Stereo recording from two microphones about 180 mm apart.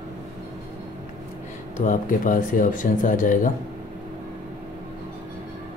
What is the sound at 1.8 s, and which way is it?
Speech, 45° left (ahead or behind).